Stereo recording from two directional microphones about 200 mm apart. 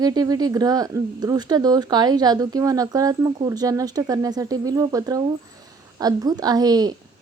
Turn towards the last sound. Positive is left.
turn(degrees=-20)  # may be behind; listen again after turning